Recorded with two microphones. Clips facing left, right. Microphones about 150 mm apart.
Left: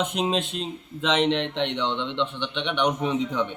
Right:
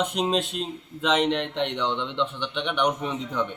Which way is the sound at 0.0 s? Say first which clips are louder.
Even; 5° left (ahead or behind).